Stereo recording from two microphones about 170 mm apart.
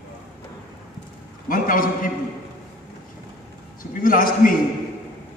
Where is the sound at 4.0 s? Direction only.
55° left (ahead or behind).